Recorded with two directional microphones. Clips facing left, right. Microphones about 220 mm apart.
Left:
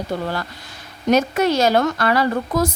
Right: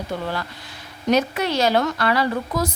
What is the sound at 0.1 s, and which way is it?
Speech, 40° left (ahead or behind).